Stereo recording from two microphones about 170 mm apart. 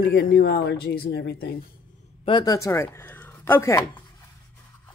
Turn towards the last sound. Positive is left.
turn(degrees=15)  # may be behind; listen again after turning